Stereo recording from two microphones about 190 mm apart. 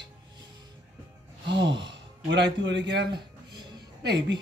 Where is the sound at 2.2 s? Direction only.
70° right (ahead or behind).